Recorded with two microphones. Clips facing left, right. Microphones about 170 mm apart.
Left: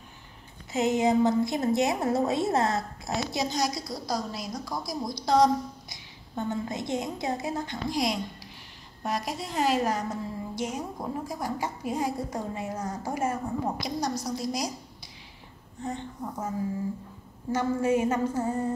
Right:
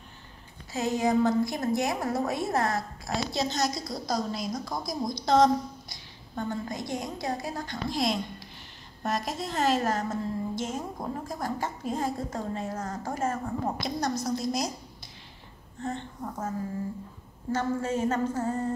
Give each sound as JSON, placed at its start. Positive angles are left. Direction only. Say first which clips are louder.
{"t": 0.7, "sound": "a woman's voice", "louder": "left 2 dB", "side_deg": 20}
{"t": 3.3, "sound": "a woman's voice", "louder": "even", "side_deg": 10}
{"t": 6.3, "sound": "a woman's voice", "louder": "left 2 dB", "side_deg": 20}
{"t": 15.8, "sound": "a woman's voice", "louder": "even", "side_deg": 10}
{"t": 17.5, "sound": "a woman's voice", "louder": "left 3 dB", "side_deg": 15}